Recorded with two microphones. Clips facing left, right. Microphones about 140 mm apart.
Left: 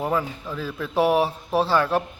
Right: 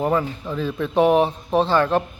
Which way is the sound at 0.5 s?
5° left (ahead or behind).